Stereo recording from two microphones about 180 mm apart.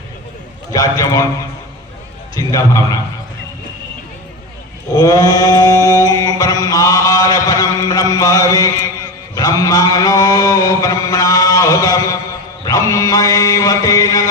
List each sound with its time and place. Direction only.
0.7 s a man's voice: 20° left (ahead or behind)
4.9 s chant: 20° left (ahead or behind)
9.3 s mantra: 20° left (ahead or behind)